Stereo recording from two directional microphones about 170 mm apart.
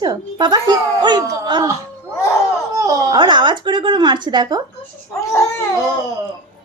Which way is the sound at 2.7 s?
15° right (ahead or behind).